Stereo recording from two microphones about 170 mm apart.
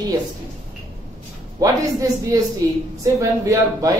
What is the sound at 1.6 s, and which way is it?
Speech, 20° right (ahead or behind).